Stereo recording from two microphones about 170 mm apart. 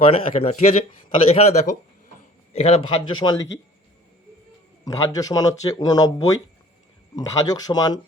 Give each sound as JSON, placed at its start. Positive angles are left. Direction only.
{"t": 0.0, "sound": "speech", "side_deg": 35}
{"t": 4.9, "sound": "speech", "side_deg": 20}